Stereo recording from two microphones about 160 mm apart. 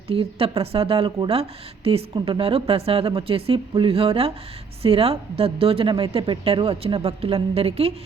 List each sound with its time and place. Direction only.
0.1 s a woman's voice: 35° right (ahead or behind)